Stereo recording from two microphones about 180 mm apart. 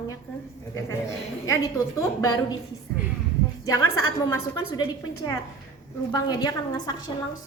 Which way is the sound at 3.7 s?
20° left (ahead or behind).